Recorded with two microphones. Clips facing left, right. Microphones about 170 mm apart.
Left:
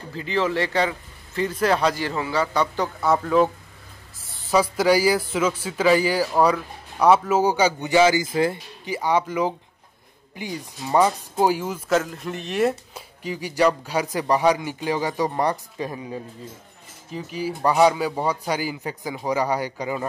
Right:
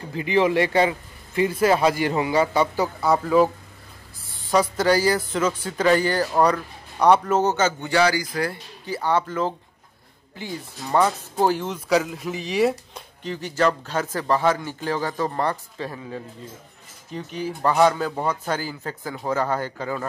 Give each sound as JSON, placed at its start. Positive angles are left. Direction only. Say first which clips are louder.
{"t": 0.1, "sound": "speech", "louder": "right 4 dB", "side_deg": -15}
{"t": 17.1, "sound": "speech", "louder": "left 1 dB", "side_deg": 5}